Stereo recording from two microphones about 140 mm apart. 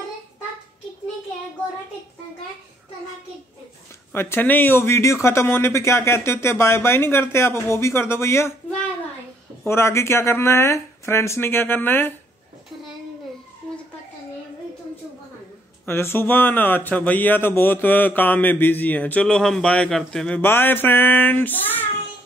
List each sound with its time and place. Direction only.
4.1 s a man's voice: 15° left (ahead or behind)
9.7 s speech: 20° left (ahead or behind)
15.8 s a man's voice: 15° left (ahead or behind)